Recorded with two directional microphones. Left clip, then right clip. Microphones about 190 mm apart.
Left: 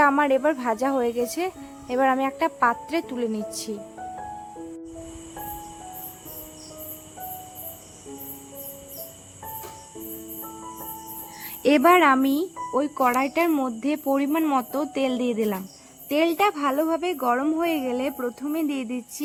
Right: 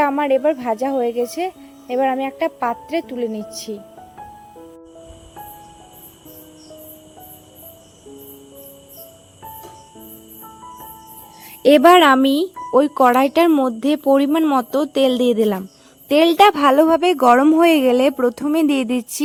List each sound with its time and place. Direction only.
0.3 s speech: 10° right (ahead or behind)
3.1 s speech: 35° left (ahead or behind)
11.6 s a woman's voice: 35° right (ahead or behind); by 19.2 s 60° right (ahead or behind)